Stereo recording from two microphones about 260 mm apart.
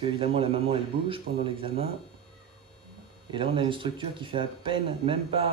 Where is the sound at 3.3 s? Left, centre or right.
Centre.